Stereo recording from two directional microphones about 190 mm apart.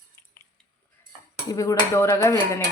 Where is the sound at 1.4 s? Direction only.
15° left (ahead or behind).